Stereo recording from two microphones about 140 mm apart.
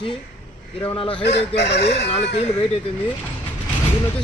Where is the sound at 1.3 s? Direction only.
50° left (ahead or behind).